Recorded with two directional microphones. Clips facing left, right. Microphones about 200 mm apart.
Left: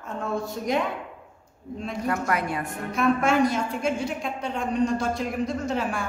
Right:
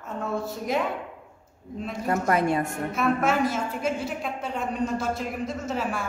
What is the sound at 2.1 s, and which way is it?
Speech, 25° right (ahead or behind).